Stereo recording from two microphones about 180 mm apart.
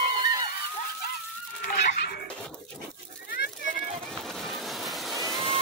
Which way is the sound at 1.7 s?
65° left (ahead or behind).